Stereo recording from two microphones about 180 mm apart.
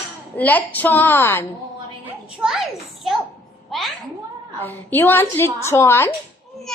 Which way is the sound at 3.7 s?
Centre (ahead or behind).